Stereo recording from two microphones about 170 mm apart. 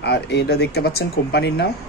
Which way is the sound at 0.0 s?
85° left.